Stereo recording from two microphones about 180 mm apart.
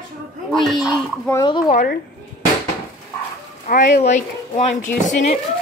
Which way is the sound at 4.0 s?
40° left (ahead or behind).